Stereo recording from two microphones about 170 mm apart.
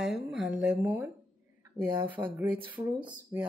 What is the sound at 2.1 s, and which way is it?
Speech, 10° right (ahead or behind).